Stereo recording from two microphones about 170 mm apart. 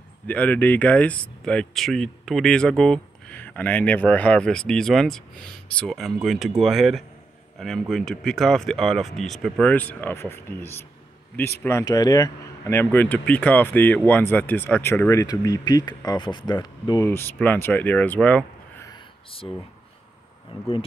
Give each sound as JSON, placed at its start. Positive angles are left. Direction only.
{"t": 0.3, "sound": "speech", "side_deg": 10}
{"t": 19.3, "sound": "speech", "side_deg": 35}
{"t": 20.5, "sound": "speech", "side_deg": 35}